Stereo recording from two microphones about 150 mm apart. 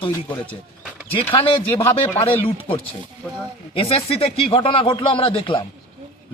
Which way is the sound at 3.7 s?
40° left (ahead or behind).